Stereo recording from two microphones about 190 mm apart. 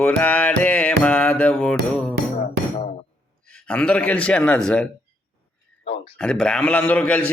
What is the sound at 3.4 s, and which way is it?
A man's voice, 5° left (ahead or behind).